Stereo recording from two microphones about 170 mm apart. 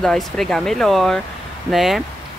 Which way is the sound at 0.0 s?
5° left (ahead or behind).